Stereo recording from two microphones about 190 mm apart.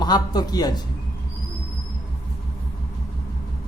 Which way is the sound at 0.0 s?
20° left (ahead or behind).